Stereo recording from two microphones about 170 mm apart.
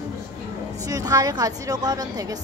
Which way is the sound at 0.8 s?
20° right (ahead or behind).